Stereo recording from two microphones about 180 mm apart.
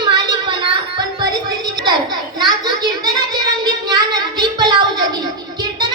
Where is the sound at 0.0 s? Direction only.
25° right (ahead or behind).